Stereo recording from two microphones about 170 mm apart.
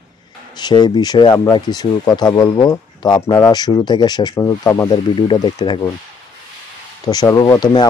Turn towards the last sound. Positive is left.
turn(degrees=25)  # may be behind; listen again after turning